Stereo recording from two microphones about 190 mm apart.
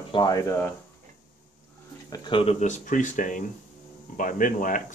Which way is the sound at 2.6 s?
40° left (ahead or behind).